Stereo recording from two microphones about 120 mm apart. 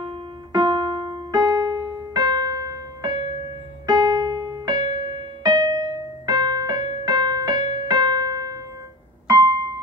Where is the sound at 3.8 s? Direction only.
35° right (ahead or behind).